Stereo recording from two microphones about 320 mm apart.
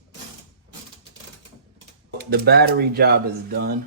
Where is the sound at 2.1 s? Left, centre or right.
Right.